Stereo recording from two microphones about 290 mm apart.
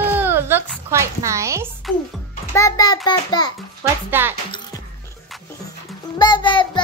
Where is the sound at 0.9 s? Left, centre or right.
Centre.